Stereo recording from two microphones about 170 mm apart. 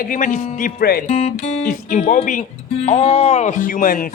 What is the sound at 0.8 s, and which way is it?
Speech, 65° left (ahead or behind).